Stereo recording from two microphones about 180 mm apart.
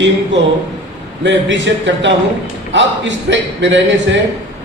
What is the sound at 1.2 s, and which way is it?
A man's voice, 85° right.